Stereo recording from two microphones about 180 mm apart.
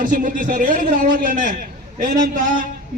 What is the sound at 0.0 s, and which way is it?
A man's voice, 45° right (ahead or behind).